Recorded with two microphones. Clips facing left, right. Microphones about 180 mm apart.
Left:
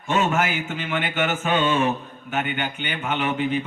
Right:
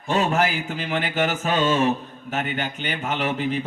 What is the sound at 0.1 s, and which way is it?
A man's voice, 35° right (ahead or behind).